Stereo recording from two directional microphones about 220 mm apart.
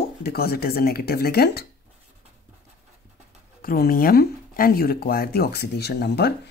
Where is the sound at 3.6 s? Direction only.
40° left (ahead or behind).